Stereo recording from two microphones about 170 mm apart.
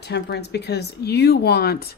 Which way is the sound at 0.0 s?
75° left (ahead or behind).